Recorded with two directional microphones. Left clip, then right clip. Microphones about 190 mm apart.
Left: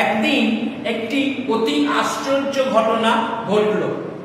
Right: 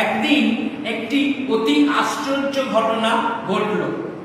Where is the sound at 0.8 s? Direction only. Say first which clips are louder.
Even; 15° left (ahead or behind).